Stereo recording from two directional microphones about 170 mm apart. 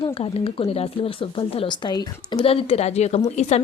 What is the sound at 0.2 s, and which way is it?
Speech, 35° left (ahead or behind).